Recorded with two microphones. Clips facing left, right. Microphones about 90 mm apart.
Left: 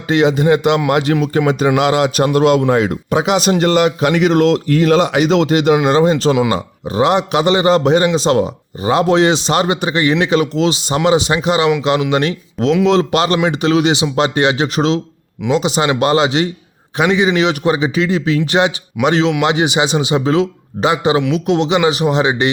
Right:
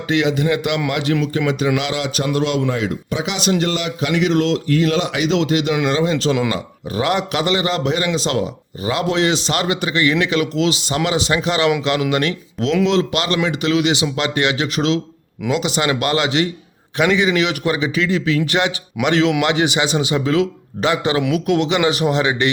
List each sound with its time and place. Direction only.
0.1 s a man's voice: 35° left (ahead or behind)
6.5 s a man's voice: 25° left (ahead or behind)